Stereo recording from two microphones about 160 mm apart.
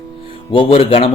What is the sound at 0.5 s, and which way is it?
Speech, 35° left (ahead or behind).